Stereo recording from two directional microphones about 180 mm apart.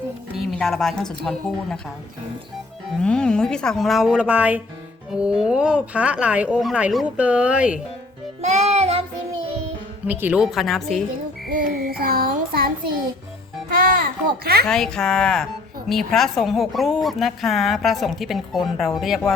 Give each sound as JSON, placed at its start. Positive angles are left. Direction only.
{"t": 0.6, "sound": "a woman's voice", "side_deg": 0}
{"t": 3.0, "sound": "a woman's voice", "side_deg": 5}
{"t": 8.4, "sound": "music", "side_deg": -40}
{"t": 10.1, "sound": "a woman's voice", "side_deg": -10}
{"t": 11.4, "sound": "music", "side_deg": -55}
{"t": 14.7, "sound": "a woman's voice", "side_deg": 5}